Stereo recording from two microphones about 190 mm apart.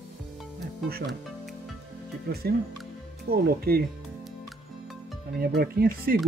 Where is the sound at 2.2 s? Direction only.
55° right (ahead or behind).